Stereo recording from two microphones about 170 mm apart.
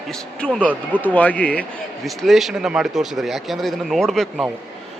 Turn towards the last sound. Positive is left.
turn(degrees=0)  # may be behind; listen again after turning